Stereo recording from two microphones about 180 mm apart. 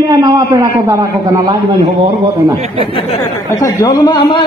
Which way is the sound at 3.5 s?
20° left (ahead or behind).